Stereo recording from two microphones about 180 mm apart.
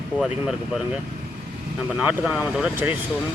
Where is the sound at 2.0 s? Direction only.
10° right (ahead or behind).